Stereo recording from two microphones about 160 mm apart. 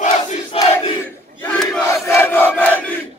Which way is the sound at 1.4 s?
10° left (ahead or behind).